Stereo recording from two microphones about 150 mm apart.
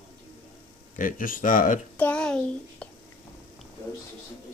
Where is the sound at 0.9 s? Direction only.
65° left (ahead or behind).